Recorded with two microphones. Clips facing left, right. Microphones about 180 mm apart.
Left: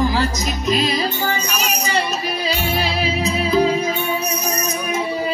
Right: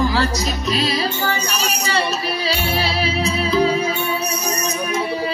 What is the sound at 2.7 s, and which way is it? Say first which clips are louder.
Music: even; 15° left (ahead or behind).